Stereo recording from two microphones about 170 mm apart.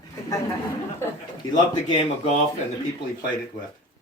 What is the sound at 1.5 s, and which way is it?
Speech, 35° left (ahead or behind).